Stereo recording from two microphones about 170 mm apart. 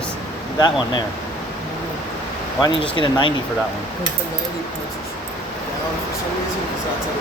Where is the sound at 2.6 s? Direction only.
30° left (ahead or behind).